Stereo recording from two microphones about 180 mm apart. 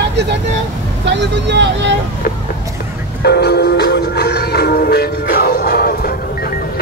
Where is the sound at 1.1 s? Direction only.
75° right (ahead or behind).